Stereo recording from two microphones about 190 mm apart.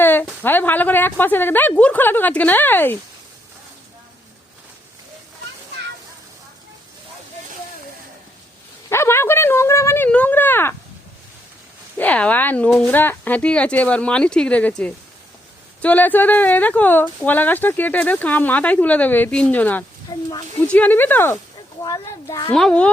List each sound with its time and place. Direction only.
0.0 s speech: 10° left (ahead or behind)
8.9 s a sound: 15° left (ahead or behind)
11.9 s speech: 10° left (ahead or behind)
22.5 s a child's voice: 5° left (ahead or behind)